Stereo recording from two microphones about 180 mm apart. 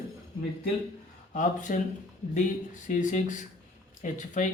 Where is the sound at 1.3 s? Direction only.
45° left (ahead or behind).